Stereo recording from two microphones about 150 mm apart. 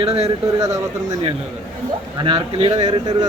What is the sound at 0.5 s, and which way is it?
Speech, 20° right (ahead or behind).